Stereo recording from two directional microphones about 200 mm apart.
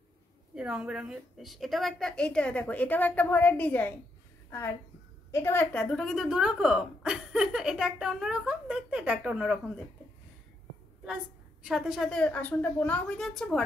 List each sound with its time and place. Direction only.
0.6 s a woman's voice: 5° right (ahead or behind)
11.6 s a woman's voice: centre (ahead or behind)